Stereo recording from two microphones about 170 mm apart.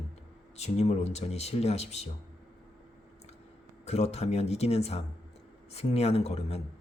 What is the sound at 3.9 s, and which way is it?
Speech, 40° left (ahead or behind).